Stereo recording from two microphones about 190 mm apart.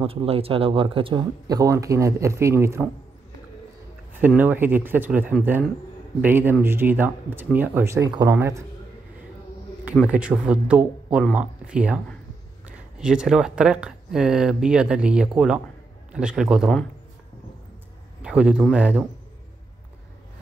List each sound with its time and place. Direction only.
0.0 s speech: 30° right (ahead or behind); by 2.9 s 15° right (ahead or behind)
4.1 s speech: 10° right (ahead or behind)
10.0 s speech: 5° right (ahead or behind)
13.0 s speech: 5° right (ahead or behind)
18.2 s speech: 5° right (ahead or behind)